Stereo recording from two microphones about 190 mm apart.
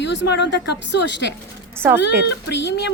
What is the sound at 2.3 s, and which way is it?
Speech, 65° left (ahead or behind).